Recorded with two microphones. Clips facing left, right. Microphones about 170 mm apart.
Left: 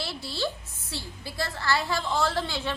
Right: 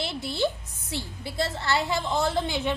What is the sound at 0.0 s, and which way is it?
A woman's voice, 20° right (ahead or behind).